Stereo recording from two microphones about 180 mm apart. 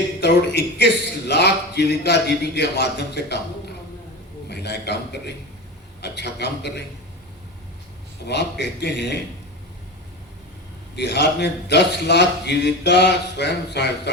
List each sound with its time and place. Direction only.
0.2 s a man's voice: 70° left (ahead or behind)
8.3 s a man's voice: 70° left (ahead or behind)
10.9 s a man's voice: 70° left (ahead or behind)